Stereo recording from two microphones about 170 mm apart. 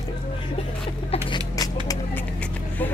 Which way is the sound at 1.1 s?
25° left (ahead or behind).